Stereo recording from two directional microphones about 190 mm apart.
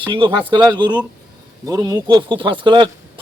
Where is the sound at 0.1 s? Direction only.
25° right (ahead or behind).